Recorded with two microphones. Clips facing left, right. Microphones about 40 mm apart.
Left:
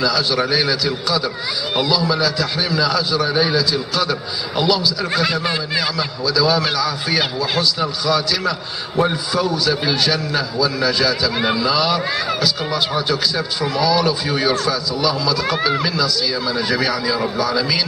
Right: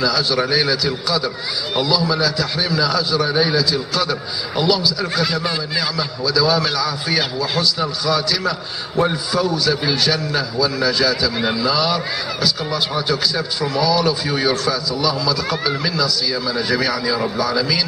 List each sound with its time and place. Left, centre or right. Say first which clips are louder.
0.0 s a man's voice: even; centre
5.1 s speech: left 1 dB; left
5.8 s a man's voice: left 1 dB; centre
15.4 s speech: left 3 dB; centre
15.8 s a man's voice: left 1 dB; centre